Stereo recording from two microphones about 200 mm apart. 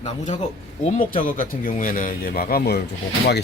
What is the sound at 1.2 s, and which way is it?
Speech, 45° left (ahead or behind).